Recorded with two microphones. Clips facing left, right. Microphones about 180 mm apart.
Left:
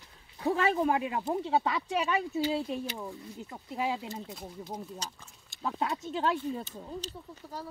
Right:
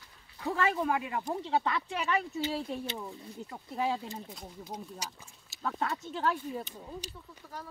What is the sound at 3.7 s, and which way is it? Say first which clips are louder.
Speech: even; 5° left (ahead or behind).